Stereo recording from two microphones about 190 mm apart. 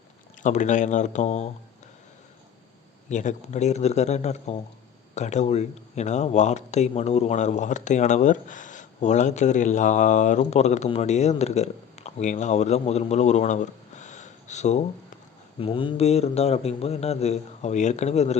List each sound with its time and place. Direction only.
0.4 s speech: 40° left (ahead or behind)
3.1 s speech: 40° left (ahead or behind)